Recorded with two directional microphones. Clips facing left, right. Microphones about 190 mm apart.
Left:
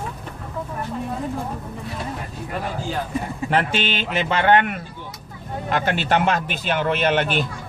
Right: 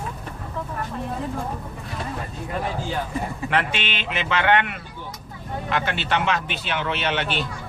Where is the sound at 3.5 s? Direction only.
40° left (ahead or behind).